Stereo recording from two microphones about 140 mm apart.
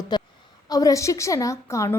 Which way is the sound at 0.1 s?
30° left (ahead or behind).